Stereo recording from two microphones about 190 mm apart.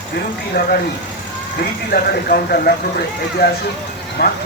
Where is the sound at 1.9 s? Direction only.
50° left (ahead or behind).